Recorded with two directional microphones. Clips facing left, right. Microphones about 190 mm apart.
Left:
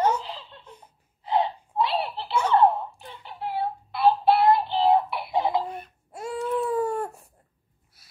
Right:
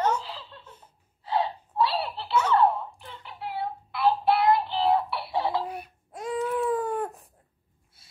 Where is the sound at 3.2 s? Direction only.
25° left (ahead or behind).